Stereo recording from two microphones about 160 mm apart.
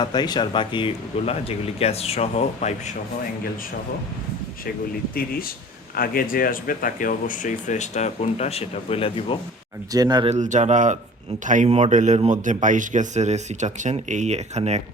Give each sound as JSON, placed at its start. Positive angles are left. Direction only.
{"t": 0.0, "sound": "speech", "side_deg": 25}
{"t": 5.1, "sound": "speech", "side_deg": 65}
{"t": 9.9, "sound": "speech", "side_deg": -25}
{"t": 10.2, "sound": "a man's voice", "side_deg": -45}